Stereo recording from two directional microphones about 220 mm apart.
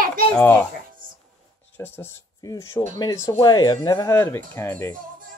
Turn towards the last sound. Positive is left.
turn(degrees=10)  # may be behind; listen again after turning